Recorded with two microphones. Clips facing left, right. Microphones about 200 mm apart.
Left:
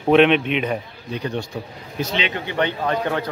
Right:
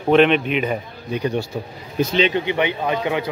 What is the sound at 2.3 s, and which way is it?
Speech, 15° right (ahead or behind).